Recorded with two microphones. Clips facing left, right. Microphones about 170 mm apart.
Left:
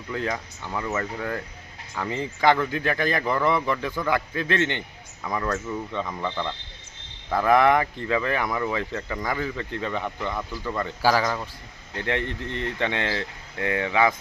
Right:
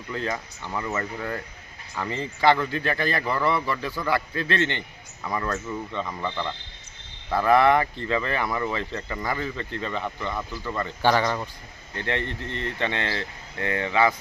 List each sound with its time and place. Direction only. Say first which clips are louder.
0.6 s speech: left 1 dB; 5° left (ahead or behind)
2.0 s speech: left 1 dB; 15° left (ahead or behind)
5.2 s speech: left 1 dB; centre (ahead or behind)
7.5 s speech: even; 10° left (ahead or behind)
9.4 s speech: left 2 dB; 10° left (ahead or behind)
11.9 s speech: left 1 dB; 10° left (ahead or behind)